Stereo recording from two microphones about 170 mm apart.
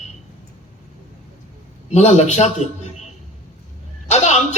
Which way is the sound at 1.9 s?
40° left (ahead or behind).